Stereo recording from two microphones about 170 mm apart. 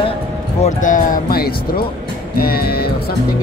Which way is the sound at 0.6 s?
45° left (ahead or behind).